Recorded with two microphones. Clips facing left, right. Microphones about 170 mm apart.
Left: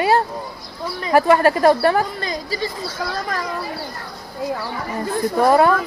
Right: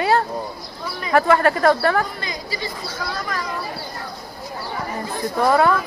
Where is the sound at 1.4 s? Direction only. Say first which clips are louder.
Left 2 dB; 30° left (ahead or behind).